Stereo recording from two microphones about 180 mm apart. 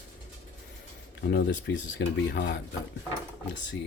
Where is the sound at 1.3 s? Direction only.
65° left (ahead or behind).